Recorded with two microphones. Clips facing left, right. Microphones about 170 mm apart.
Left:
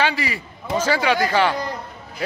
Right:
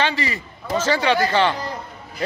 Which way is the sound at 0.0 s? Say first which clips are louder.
Even; 10° left (ahead or behind).